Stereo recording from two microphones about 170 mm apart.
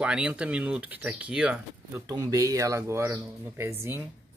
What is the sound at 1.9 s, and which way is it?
Speech, 20° right (ahead or behind).